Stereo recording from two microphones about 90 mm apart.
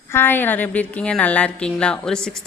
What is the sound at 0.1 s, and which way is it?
A woman's voice, 25° left (ahead or behind).